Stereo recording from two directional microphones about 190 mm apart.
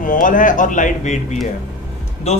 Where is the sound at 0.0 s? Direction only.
45° left (ahead or behind).